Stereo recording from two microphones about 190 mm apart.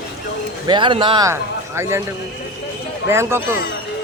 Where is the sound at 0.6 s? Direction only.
25° right (ahead or behind).